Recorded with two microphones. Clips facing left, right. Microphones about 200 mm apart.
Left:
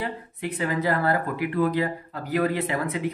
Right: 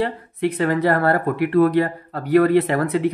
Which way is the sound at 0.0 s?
65° right (ahead or behind).